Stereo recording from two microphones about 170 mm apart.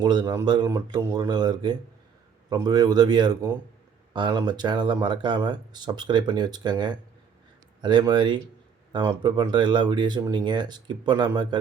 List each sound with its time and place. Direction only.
0.0 s speech: 25° right (ahead or behind)